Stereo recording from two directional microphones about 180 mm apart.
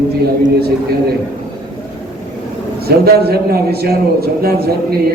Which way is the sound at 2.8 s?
60° right (ahead or behind).